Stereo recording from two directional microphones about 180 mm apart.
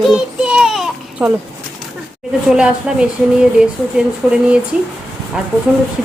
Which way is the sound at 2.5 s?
5° right (ahead or behind).